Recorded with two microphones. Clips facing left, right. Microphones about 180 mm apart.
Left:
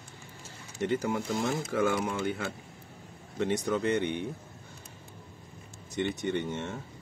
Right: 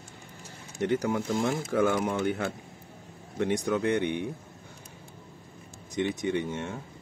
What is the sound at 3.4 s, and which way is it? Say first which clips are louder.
Speech: right 2 dB; 15° right (ahead or behind).